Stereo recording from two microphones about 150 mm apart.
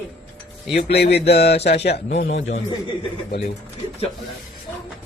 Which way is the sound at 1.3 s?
90° left.